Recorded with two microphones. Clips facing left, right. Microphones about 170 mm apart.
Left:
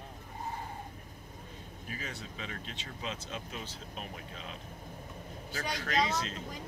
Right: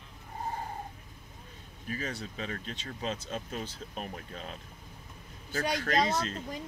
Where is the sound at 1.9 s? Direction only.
40° right (ahead or behind).